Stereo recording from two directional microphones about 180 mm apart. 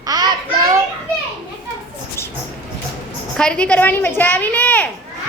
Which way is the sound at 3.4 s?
5° left (ahead or behind).